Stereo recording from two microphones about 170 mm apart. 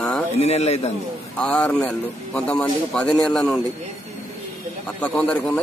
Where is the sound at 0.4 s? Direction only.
40° left (ahead or behind).